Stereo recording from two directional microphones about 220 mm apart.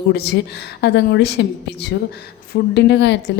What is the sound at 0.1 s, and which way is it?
A woman's voice, 50° left (ahead or behind).